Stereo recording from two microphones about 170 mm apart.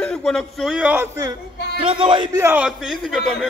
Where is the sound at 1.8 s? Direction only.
30° right (ahead or behind).